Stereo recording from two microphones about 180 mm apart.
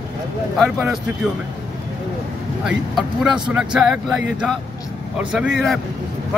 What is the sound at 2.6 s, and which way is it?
Speech, 5° right (ahead or behind).